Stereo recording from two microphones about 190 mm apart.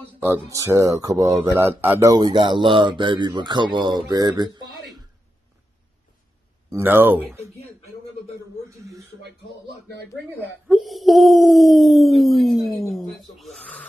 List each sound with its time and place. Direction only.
0.2 s speech: 15° right (ahead or behind)
6.7 s speech: 10° right (ahead or behind)
8.6 s speech: 15° right (ahead or behind)
10.7 s speech: centre (ahead or behind)